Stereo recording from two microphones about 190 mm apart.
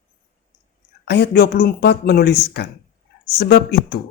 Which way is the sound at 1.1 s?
60° left (ahead or behind).